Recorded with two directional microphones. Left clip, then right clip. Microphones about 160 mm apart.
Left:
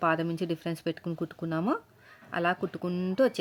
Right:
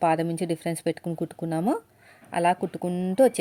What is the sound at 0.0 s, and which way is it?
Speech, 15° right (ahead or behind).